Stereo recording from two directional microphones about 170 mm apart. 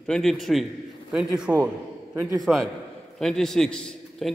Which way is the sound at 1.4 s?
10° right (ahead or behind).